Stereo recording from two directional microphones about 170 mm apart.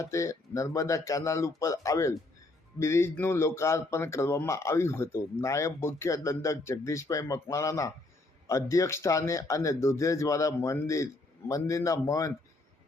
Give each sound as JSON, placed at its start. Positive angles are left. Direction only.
{"t": 0.0, "sound": "speech", "side_deg": 15}